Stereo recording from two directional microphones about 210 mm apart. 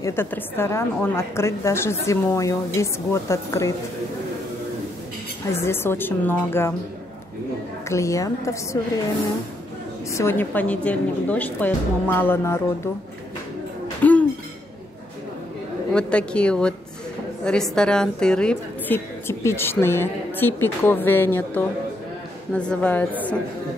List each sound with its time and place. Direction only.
0.0 s a woman's voice: 10° left (ahead or behind)
5.5 s a woman's voice: 10° left (ahead or behind)
7.9 s a woman's voice: 15° left (ahead or behind)
10.1 s a woman's voice: 10° left (ahead or behind)
14.0 s music: 5° left (ahead or behind)
15.9 s a woman's voice: 5° left (ahead or behind)